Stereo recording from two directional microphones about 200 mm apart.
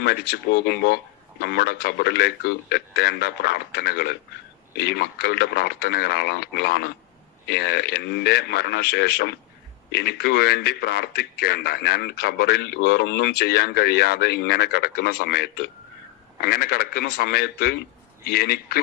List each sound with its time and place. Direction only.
0.0 s speech: 55° left (ahead or behind)